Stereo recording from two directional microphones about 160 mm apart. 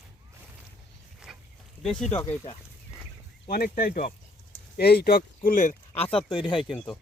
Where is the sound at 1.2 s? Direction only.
5° right (ahead or behind).